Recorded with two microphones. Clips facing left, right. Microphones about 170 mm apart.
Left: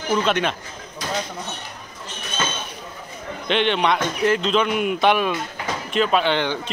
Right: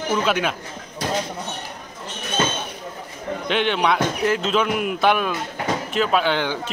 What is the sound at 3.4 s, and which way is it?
Speech, 5° right (ahead or behind).